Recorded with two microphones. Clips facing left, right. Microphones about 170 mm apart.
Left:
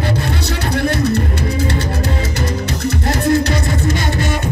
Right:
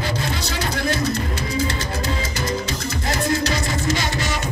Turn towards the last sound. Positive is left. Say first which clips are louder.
# left 4 dB
turn(degrees=60)  # may be behind; listen again after turning